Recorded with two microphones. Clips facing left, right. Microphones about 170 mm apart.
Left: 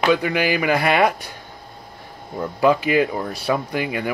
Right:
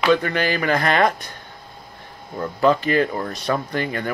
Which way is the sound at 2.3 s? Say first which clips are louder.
Left 1 dB; 10° left (ahead or behind).